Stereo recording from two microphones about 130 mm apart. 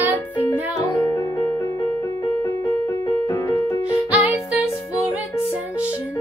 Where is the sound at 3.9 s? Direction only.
10° right (ahead or behind).